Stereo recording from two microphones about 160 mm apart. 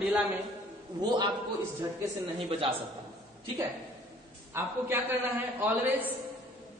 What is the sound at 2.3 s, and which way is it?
Speech, 35° right (ahead or behind).